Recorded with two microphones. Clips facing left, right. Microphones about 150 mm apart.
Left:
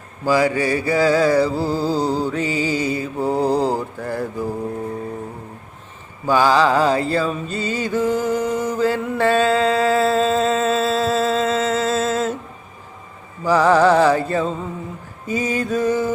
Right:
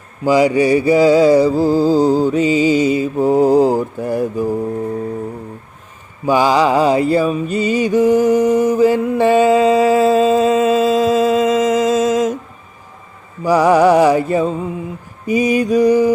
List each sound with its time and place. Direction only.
0.3 s mantra: 15° right (ahead or behind)
6.2 s mantra: 15° right (ahead or behind)
13.4 s music: 15° right (ahead or behind)
15.3 s mantra: 15° right (ahead or behind)